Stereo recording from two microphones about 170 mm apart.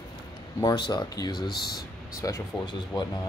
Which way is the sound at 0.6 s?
25° left (ahead or behind).